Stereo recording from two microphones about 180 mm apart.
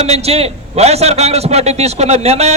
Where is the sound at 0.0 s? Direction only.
35° right (ahead or behind).